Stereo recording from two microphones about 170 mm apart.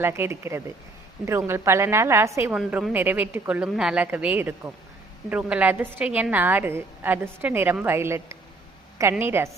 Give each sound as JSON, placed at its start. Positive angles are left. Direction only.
{"t": 0.0, "sound": "a woman's voice", "side_deg": -15}